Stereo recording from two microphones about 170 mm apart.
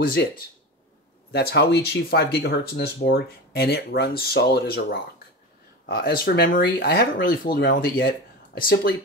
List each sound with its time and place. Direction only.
0.0 s speech: 60° left (ahead or behind)
1.3 s speech: 70° left (ahead or behind)